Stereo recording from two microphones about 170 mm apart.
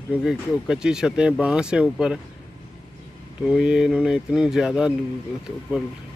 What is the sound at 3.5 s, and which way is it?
Speech, 5° right (ahead or behind).